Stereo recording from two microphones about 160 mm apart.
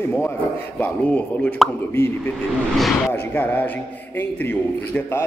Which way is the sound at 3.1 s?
10° left (ahead or behind).